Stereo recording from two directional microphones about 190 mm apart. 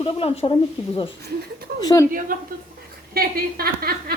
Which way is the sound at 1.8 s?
20° left (ahead or behind).